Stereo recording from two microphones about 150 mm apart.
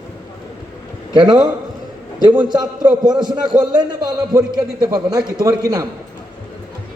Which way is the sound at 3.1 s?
30° right (ahead or behind).